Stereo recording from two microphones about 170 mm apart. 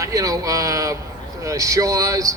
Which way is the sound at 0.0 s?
20° right (ahead or behind).